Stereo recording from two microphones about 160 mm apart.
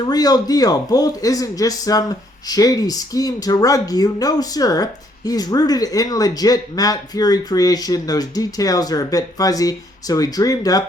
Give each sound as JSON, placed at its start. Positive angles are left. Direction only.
{"t": 0.0, "sound": "a man's voice", "side_deg": 25}